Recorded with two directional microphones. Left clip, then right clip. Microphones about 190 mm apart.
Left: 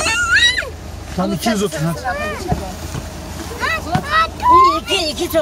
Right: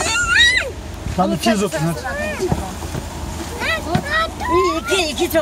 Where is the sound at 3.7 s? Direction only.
50° left (ahead or behind).